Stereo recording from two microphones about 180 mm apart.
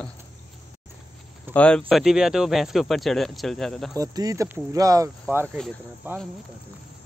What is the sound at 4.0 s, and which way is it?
Speech, 20° right (ahead or behind).